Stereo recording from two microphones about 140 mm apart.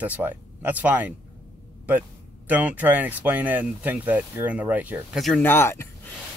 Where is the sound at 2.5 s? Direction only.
10° right (ahead or behind).